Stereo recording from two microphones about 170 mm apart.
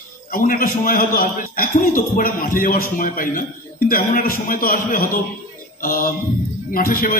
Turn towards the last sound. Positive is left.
turn(degrees=55)  # may be behind; listen again after turning